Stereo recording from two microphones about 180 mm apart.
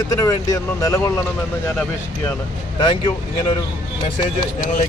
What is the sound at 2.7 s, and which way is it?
Speech, 30° left (ahead or behind).